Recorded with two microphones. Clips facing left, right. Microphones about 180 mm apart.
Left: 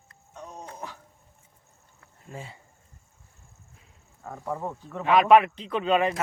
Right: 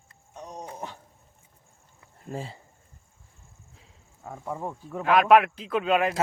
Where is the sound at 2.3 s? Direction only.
35° right (ahead or behind).